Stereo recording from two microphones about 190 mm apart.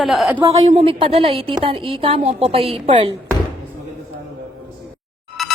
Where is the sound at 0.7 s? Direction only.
30° right (ahead or behind).